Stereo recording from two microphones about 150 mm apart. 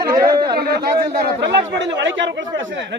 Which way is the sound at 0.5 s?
90° right.